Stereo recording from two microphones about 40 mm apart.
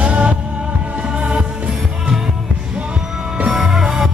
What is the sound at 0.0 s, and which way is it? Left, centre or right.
Music, right.